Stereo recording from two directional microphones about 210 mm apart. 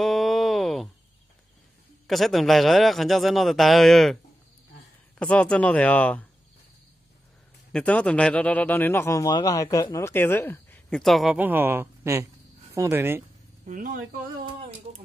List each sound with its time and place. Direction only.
0.0 s a sound: centre (ahead or behind)
2.0 s a man's voice: centre (ahead or behind)
5.2 s a man's voice: 5° left (ahead or behind)
7.7 s speech: 5° left (ahead or behind); by 13.2 s 10° right (ahead or behind)
13.7 s speech: 40° right (ahead or behind)